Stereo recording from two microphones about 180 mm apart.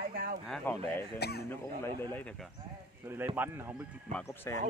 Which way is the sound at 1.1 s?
65° left (ahead or behind).